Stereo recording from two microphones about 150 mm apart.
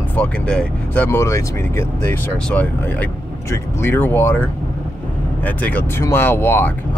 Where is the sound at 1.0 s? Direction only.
20° left (ahead or behind).